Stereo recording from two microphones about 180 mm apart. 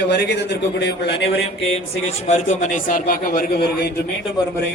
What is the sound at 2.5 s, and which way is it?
A man's voice, 45° left (ahead or behind).